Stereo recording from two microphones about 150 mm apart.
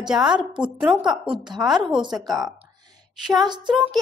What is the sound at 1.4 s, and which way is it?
Speech, 30° right (ahead or behind).